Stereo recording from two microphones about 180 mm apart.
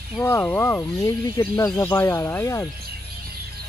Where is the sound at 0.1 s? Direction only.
10° left (ahead or behind).